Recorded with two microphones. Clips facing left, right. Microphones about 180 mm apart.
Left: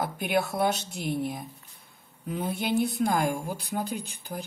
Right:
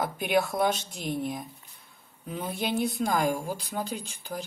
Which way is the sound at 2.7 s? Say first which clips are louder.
Left 2 dB; 55° left (ahead or behind).